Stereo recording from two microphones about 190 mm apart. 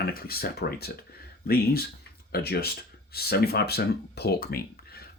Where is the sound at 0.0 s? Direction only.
55° left (ahead or behind).